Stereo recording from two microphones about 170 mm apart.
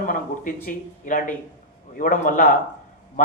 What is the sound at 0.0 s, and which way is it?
A man's voice, 55° left (ahead or behind).